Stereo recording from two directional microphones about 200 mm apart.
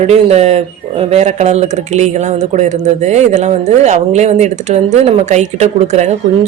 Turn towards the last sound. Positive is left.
turn(degrees=-35)  # may be behind; listen again after turning